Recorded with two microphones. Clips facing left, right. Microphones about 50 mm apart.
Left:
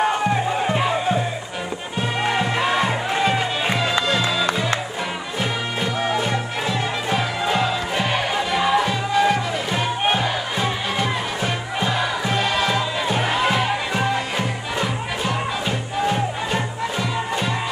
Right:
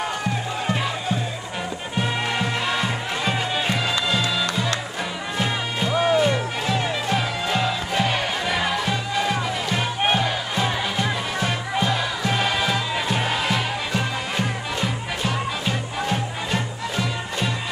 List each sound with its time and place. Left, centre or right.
0.0 s music: left
2.3 s music: centre
7.2 s music: centre
12.4 s music: centre
12.7 s music: centre